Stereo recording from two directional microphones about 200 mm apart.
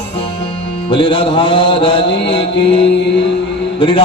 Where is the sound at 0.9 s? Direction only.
25° left (ahead or behind).